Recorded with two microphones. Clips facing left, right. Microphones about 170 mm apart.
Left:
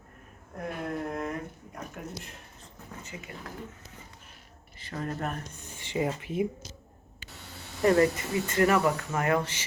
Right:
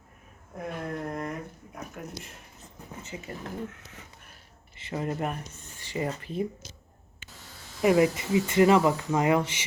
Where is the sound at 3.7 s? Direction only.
80° right.